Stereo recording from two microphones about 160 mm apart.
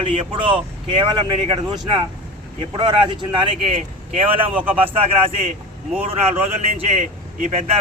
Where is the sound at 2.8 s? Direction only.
30° right (ahead or behind).